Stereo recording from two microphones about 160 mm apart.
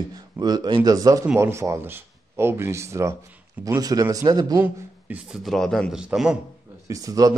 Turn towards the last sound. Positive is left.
turn(degrees=-20)  # may be behind; listen again after turning